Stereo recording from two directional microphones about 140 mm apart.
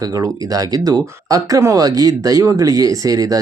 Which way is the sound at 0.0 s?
25° right (ahead or behind).